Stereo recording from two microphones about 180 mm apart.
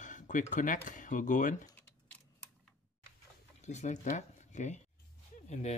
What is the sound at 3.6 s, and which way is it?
Speech, 40° left (ahead or behind).